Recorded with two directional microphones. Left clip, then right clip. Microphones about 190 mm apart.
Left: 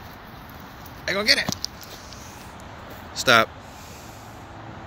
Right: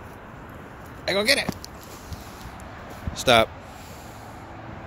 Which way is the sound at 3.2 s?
10° right (ahead or behind).